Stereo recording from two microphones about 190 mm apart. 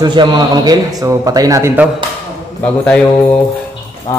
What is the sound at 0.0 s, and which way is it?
A man's voice, 25° right (ahead or behind).